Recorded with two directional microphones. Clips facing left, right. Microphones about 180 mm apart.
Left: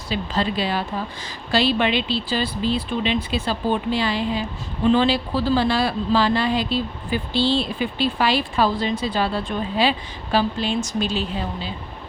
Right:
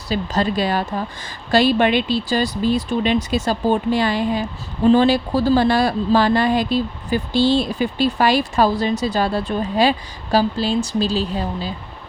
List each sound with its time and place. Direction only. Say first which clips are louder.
0.1 s a woman's voice: right 3 dB; 45° right (ahead or behind)